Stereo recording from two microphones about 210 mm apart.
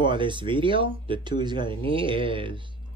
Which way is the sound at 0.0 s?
20° right (ahead or behind).